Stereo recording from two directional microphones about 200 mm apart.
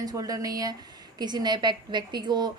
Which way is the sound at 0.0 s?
20° right (ahead or behind).